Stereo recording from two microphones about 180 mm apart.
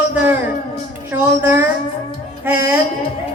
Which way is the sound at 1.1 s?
15° right (ahead or behind).